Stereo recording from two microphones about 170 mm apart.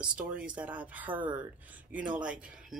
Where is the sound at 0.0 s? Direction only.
5° right (ahead or behind).